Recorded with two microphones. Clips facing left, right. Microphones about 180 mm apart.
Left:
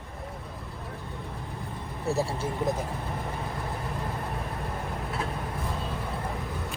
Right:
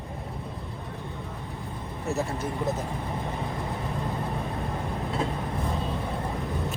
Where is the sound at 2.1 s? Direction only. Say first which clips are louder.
Left 1 dB; 35° left (ahead or behind).